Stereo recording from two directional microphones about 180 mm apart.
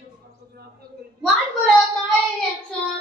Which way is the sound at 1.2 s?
Centre (ahead or behind).